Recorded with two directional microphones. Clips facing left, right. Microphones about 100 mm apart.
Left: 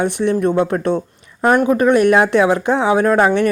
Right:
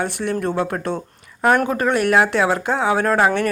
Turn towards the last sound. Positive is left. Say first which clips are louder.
# left 4 dB
turn(degrees=20)  # may be behind; listen again after turning